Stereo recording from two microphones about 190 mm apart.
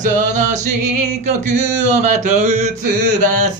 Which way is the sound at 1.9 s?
40° right (ahead or behind).